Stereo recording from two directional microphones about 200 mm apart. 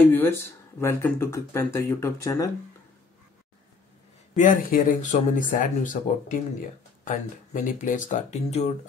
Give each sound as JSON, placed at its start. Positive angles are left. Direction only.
{"t": 0.1, "sound": "speech", "side_deg": 10}
{"t": 4.4, "sound": "speech", "side_deg": 40}